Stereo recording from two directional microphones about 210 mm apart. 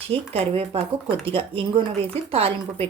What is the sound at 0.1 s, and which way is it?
Speech, 30° right (ahead or behind).